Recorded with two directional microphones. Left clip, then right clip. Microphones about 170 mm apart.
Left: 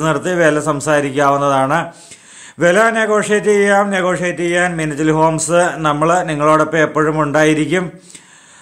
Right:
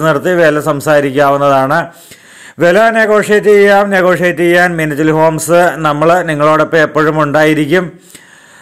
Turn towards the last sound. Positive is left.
turn(degrees=-25)  # may be behind; listen again after turning